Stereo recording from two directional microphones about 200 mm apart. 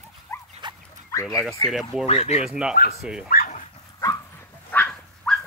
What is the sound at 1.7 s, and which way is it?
Speech, centre (ahead or behind).